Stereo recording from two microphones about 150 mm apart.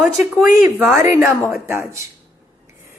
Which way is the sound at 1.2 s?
15° right (ahead or behind).